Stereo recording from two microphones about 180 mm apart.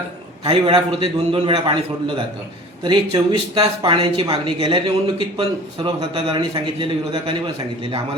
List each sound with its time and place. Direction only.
0.4 s a man's voice: 30° right (ahead or behind)